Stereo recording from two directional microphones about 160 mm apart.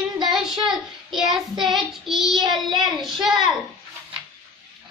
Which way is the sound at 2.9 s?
Centre (ahead or behind).